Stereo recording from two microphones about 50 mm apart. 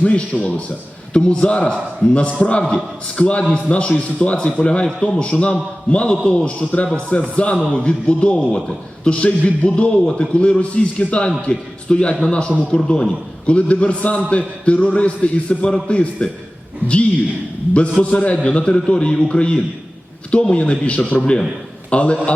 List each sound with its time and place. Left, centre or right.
0.0 s a man's voice: left
18.0 s a man's voice: left